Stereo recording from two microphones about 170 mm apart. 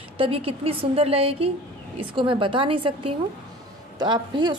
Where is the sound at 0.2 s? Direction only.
35° right (ahead or behind).